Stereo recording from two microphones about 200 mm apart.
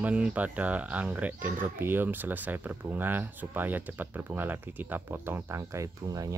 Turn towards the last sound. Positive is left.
turn(degrees=-15)  # may be behind; listen again after turning